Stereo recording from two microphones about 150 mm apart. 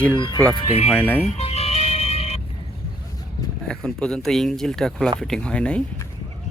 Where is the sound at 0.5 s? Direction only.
30° left (ahead or behind).